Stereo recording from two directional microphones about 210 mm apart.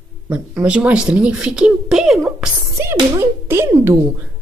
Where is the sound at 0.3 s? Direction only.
5° right (ahead or behind).